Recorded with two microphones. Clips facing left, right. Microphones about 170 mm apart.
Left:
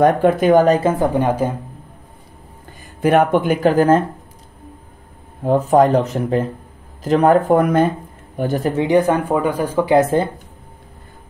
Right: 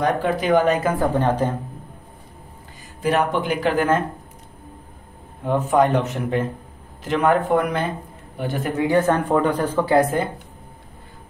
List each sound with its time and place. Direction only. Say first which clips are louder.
0.0 s speech: left 7 dB; 50° left (ahead or behind); by 1.5 s 10° left (ahead or behind)
3.0 s speech: left 6 dB; 55° left (ahead or behind); by 4.0 s 35° left (ahead or behind)
5.4 s speech: left 5 dB; 35° left (ahead or behind)
8.8 s speech: left 2 dB; 15° left (ahead or behind)
9.9 s speech: left 4 dB; 25° left (ahead or behind)